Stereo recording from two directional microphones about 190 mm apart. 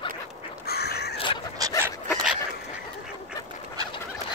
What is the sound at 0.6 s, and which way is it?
Crow, 60° left (ahead or behind).